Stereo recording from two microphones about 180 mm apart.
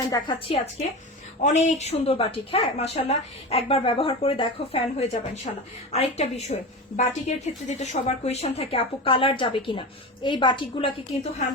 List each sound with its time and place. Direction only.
0.0 s a woman's voice: 20° left (ahead or behind)
0.3 s a woman's voice: 30° left (ahead or behind)